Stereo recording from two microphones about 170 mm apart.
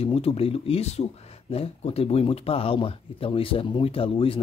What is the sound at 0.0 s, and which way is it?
Speech, 35° left (ahead or behind).